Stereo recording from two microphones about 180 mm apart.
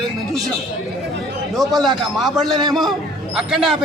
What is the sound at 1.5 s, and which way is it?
Speech, centre (ahead or behind).